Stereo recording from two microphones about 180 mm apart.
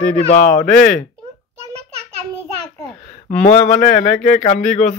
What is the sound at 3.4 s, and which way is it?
Speech, 45° left (ahead or behind).